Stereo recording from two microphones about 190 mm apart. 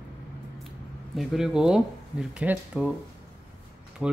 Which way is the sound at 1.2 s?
Centre (ahead or behind).